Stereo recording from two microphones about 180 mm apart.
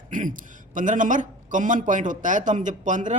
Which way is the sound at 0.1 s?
45° right (ahead or behind).